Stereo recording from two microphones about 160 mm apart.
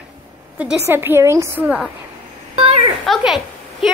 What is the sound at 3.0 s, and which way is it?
Speech, centre (ahead or behind).